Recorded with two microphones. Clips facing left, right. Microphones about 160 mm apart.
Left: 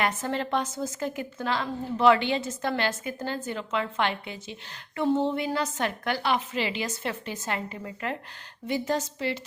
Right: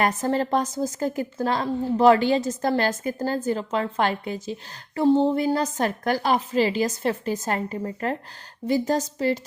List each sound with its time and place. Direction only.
0.0 s a woman's voice: 40° right (ahead or behind)